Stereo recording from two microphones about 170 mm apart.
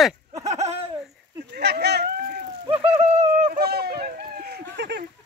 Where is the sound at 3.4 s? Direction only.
60° right (ahead or behind); by 5.0 s 80° right.